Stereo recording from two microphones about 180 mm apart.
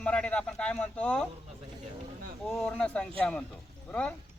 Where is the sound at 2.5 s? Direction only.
5° left (ahead or behind).